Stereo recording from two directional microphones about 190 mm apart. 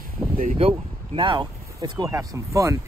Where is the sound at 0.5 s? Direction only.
30° right (ahead or behind).